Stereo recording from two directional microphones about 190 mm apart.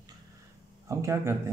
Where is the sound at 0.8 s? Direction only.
15° right (ahead or behind).